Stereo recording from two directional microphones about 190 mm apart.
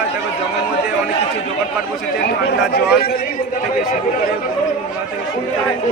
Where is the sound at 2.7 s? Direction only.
55° left (ahead or behind).